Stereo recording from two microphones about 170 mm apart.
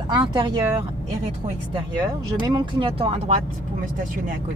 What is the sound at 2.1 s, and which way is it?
Speech, 25° right (ahead or behind).